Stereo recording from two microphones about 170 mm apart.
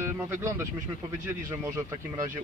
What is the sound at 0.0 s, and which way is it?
Speech, 15° right (ahead or behind).